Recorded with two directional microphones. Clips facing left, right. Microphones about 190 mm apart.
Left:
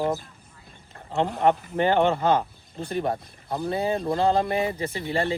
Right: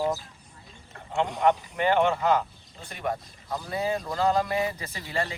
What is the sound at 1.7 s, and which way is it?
Speech, 35° left (ahead or behind).